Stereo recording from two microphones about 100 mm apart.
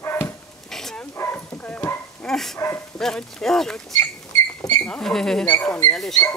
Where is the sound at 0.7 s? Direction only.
5° left (ahead or behind).